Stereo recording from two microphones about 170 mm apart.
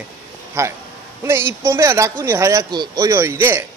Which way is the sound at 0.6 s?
15° right (ahead or behind).